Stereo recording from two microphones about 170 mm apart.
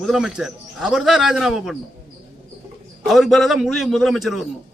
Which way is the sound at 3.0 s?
Centre (ahead or behind).